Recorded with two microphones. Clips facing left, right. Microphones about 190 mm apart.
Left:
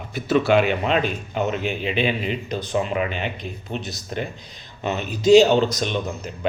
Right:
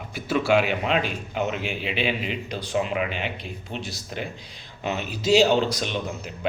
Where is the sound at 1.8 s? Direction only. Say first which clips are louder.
Left 4 dB; 45° left (ahead or behind).